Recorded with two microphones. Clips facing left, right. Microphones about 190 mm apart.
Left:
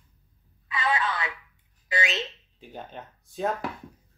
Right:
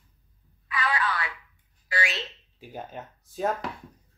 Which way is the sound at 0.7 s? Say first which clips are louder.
Left 1 dB; 25° left (ahead or behind).